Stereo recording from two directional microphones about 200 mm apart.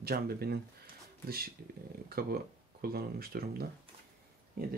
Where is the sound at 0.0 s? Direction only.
50° right (ahead or behind).